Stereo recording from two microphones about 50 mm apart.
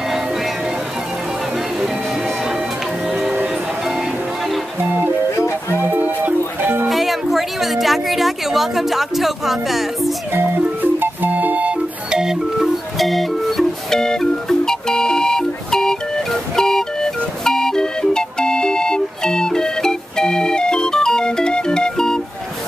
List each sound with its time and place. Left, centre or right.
5.8 s music: right
6.9 s music: centre
10.3 s music: right
12.1 s music: centre
12.6 s music: centre